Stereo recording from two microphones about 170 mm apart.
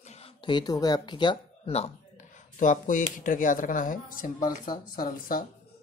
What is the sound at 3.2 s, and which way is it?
Speech, 50° left (ahead or behind).